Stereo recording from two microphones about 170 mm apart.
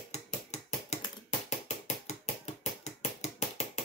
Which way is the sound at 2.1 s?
40° left (ahead or behind).